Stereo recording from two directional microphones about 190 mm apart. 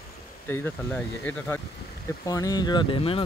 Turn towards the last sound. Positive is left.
turn(degrees=30)  # may be behind; listen again after turning